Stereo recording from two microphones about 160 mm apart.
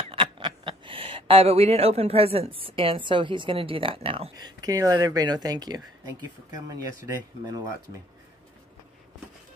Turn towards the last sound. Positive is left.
turn(degrees=-20)  # may be behind; listen again after turning